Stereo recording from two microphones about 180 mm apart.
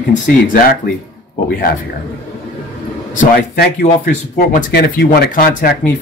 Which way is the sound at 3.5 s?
60° left (ahead or behind).